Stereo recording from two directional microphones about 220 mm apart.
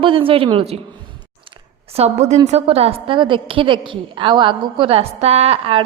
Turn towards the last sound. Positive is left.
turn(degrees=-25)  # may be behind; listen again after turning